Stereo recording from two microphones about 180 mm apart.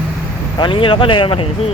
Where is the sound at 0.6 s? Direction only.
30° left (ahead or behind).